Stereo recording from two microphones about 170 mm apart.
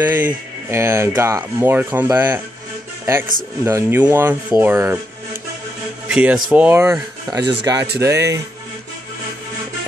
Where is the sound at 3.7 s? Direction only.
15° right (ahead or behind).